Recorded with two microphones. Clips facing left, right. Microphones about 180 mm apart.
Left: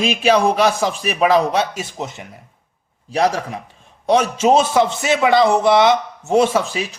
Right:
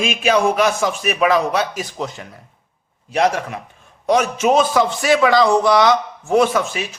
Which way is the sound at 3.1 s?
35° left (ahead or behind).